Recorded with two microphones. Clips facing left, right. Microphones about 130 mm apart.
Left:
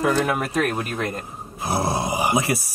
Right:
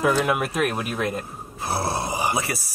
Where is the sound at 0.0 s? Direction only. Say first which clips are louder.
Even; 10° right (ahead or behind).